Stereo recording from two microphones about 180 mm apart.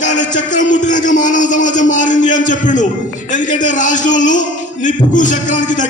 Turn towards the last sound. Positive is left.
turn(degrees=45)  # may be behind; listen again after turning